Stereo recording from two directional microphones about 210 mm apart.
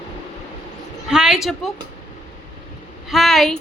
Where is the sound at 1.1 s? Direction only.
5° right (ahead or behind).